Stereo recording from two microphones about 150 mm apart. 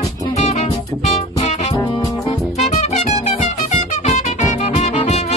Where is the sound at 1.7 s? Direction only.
30° left (ahead or behind).